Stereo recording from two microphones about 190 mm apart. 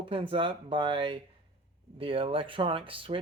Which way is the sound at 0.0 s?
25° right (ahead or behind).